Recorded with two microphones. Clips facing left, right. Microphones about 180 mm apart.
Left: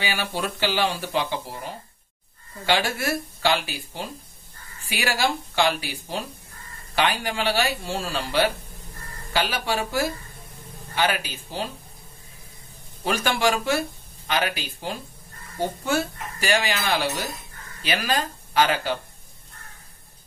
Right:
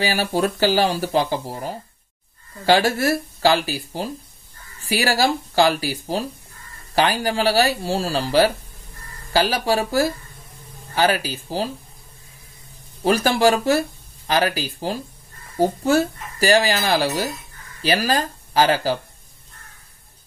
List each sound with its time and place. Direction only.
0.0 s speech: 40° right (ahead or behind)
13.0 s speech: 35° right (ahead or behind)